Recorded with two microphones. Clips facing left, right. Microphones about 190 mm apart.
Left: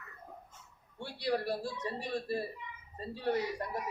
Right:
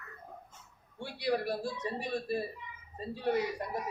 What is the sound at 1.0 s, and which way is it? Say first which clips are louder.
A man's voice: right 1 dB; 15° right (ahead or behind).